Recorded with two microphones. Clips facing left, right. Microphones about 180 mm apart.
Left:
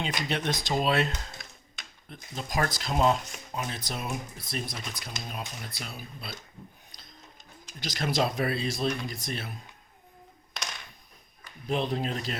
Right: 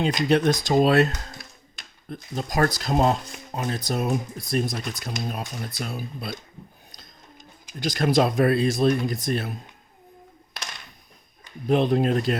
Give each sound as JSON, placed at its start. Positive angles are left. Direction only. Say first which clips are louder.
{"t": 0.3, "sound": "speech", "louder": "right 11 dB", "side_deg": -40}
{"t": 7.8, "sound": "speech", "louder": "right 8 dB", "side_deg": -50}
{"t": 11.7, "sound": "speech", "louder": "right 9 dB", "side_deg": -55}